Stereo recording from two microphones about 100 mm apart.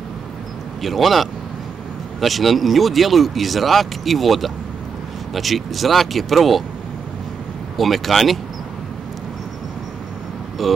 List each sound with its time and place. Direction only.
0.8 s speech: centre (ahead or behind)
7.7 s speech: centre (ahead or behind)
10.6 s speech: centre (ahead or behind)